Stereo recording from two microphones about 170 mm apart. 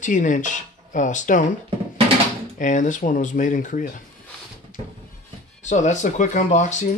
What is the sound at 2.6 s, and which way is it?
Speech, 50° left (ahead or behind).